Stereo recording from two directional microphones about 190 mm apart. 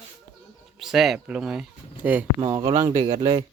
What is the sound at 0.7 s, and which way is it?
Speech, centre (ahead or behind).